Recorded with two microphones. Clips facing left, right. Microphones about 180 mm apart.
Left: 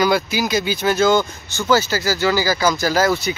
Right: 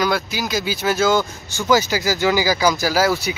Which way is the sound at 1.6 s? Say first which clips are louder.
Even; 15° right (ahead or behind).